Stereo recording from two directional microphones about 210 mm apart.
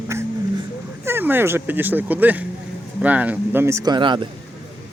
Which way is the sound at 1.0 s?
10° right (ahead or behind).